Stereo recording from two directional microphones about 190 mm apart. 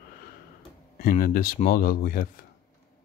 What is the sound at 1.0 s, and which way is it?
Speech, 50° left (ahead or behind).